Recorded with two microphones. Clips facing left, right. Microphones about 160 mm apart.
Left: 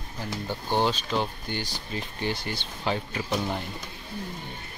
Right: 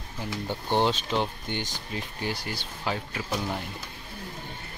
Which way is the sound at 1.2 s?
20° right (ahead or behind).